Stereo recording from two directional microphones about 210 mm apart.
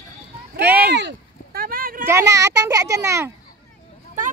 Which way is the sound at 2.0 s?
15° right (ahead or behind).